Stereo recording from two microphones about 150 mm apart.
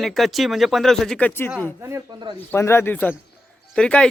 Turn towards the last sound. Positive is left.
turn(degrees=5)  # may be behind; listen again after turning